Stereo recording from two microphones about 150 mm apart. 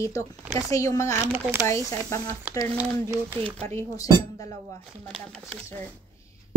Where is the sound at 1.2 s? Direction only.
15° right (ahead or behind).